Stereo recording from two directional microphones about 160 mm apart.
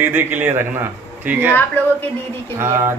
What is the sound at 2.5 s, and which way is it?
Speech, 15° right (ahead or behind).